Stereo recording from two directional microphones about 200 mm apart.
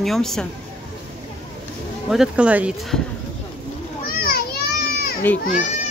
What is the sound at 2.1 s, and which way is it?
Speech, 5° right (ahead or behind).